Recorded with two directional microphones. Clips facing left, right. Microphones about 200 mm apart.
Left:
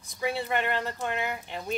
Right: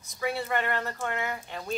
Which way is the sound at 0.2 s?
20° left (ahead or behind).